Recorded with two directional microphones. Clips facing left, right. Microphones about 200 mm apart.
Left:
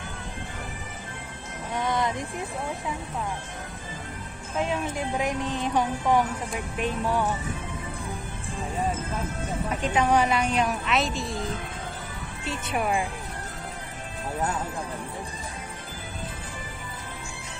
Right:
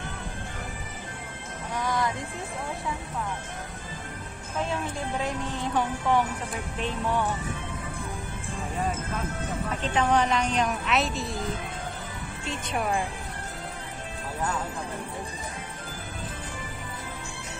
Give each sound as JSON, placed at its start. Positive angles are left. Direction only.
{"t": 1.7, "sound": "music", "side_deg": 25}
{"t": 4.6, "sound": "speech", "side_deg": 15}
{"t": 9.7, "sound": "speech", "side_deg": 10}